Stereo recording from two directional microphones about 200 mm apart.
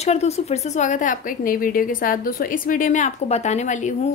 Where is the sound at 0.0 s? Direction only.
35° left (ahead or behind).